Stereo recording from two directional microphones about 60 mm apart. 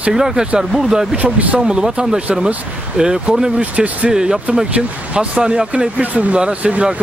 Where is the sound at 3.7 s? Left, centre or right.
Right.